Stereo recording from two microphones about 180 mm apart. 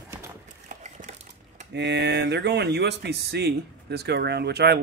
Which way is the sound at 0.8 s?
40° right (ahead or behind).